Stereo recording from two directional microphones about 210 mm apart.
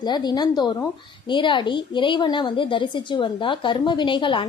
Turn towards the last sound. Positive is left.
turn(degrees=25)  # may be behind; listen again after turning